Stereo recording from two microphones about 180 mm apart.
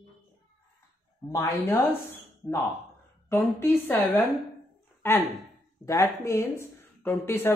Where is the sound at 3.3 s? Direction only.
15° left (ahead or behind).